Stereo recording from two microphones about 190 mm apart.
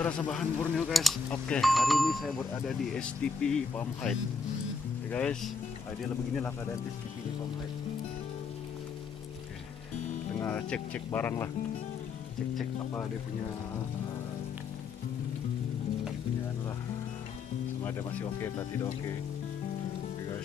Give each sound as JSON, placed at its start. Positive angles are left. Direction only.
{"t": 0.0, "sound": "speech", "side_deg": 5}
{"t": 10.4, "sound": "speech", "side_deg": 10}
{"t": 18.4, "sound": "speech", "side_deg": 15}